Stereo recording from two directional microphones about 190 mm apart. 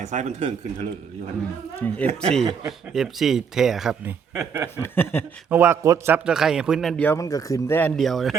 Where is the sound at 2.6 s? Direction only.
Centre (ahead or behind).